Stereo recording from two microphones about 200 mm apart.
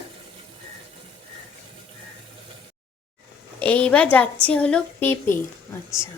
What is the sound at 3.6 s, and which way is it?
A woman's voice, 5° left (ahead or behind).